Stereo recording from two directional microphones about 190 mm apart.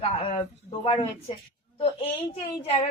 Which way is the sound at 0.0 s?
30° left (ahead or behind).